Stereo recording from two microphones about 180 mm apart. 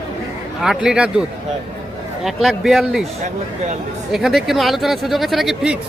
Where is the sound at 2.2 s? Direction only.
Centre (ahead or behind).